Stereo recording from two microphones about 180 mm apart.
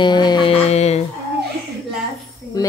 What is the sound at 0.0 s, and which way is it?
Music, 25° left (ahead or behind).